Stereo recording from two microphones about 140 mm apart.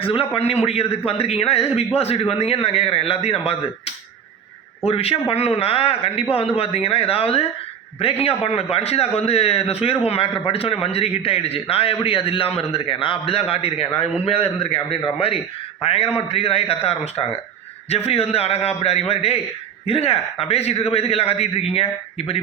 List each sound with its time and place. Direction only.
0.0 s a man's voice: 40° left (ahead or behind)